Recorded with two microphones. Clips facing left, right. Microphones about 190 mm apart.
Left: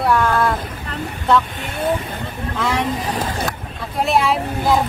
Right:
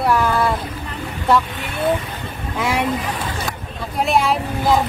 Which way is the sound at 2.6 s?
10° right (ahead or behind).